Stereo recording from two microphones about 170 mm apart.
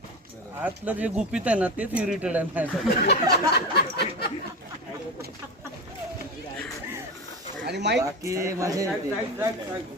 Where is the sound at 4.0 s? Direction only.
70° left (ahead or behind).